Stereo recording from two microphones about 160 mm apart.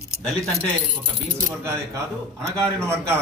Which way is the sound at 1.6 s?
15° right (ahead or behind).